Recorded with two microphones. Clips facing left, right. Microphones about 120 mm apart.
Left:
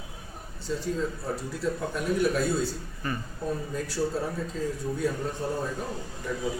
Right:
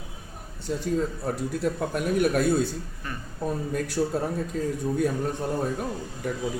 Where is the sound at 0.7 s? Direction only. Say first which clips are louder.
Right 2 dB; 60° right (ahead or behind).